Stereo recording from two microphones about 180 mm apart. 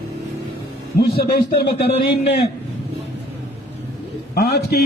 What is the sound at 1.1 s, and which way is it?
Speech, 60° left (ahead or behind).